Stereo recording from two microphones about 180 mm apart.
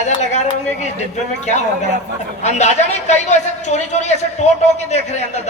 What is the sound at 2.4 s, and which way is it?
A woman's voice, 40° left (ahead or behind).